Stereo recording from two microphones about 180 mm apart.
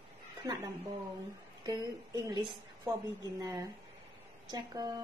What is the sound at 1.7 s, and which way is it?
Speech, 25° right (ahead or behind).